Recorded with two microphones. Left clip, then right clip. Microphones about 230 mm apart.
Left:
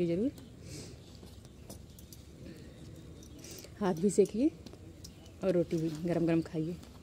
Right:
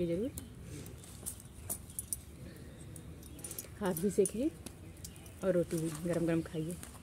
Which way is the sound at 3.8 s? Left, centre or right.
Left.